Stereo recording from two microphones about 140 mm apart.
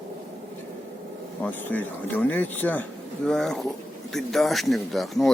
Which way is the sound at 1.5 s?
10° left (ahead or behind).